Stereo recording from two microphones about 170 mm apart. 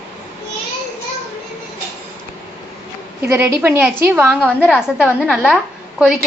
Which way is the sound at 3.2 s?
15° right (ahead or behind).